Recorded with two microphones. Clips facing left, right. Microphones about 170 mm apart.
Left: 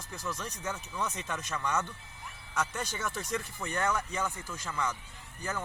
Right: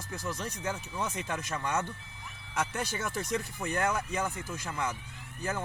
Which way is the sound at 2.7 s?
10° right (ahead or behind).